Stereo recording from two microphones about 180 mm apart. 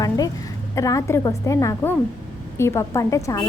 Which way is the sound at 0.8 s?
15° left (ahead or behind).